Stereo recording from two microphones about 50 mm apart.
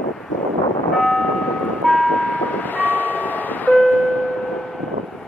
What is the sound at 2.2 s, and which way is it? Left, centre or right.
Vehicle, left.